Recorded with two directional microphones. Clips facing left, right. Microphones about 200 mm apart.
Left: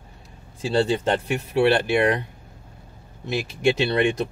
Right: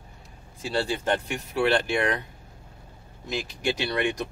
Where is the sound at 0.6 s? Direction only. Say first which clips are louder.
Left 6 dB; 25° left (ahead or behind).